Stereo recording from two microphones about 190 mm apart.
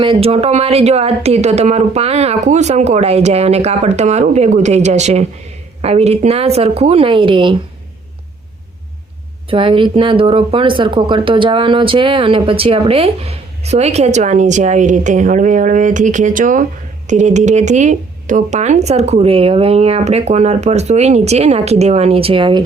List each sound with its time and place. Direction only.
0.0 s speech: 30° right (ahead or behind)
9.5 s speech: 25° right (ahead or behind)